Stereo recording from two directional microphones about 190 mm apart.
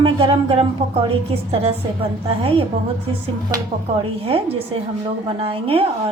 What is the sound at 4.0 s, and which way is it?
A woman's voice, 30° right (ahead or behind).